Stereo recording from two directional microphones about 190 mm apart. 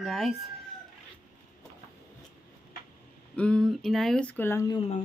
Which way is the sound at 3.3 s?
5° left (ahead or behind).